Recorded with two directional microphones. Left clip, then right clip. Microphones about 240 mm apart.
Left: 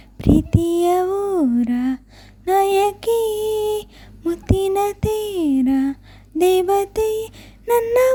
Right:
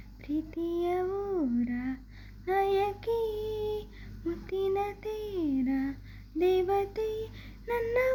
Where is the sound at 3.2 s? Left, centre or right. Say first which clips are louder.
Left 12 dB; left.